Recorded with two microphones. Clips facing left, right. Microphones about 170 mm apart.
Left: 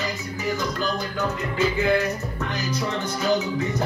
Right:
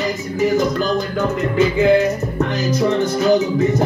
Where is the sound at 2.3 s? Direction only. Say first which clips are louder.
Right 9 dB; 45° right (ahead or behind).